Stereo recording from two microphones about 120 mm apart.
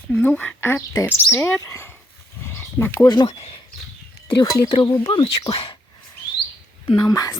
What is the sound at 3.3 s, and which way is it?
Speech, 60° left (ahead or behind).